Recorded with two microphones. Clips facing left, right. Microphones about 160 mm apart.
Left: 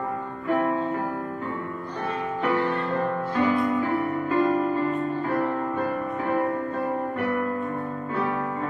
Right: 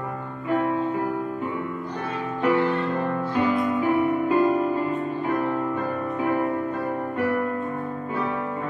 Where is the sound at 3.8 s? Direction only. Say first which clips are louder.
Right 4 dB; 15° right (ahead or behind).